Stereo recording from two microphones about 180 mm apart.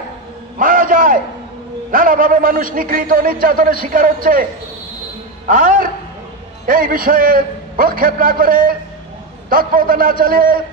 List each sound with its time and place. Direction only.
0.6 s a sound: 50° right (ahead or behind)
1.9 s a man's voice: 50° right (ahead or behind)
5.5 s a man's voice: 50° right (ahead or behind)